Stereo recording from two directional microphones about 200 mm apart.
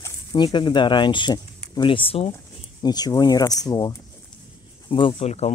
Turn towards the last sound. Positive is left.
turn(degrees=30)  # may be behind; listen again after turning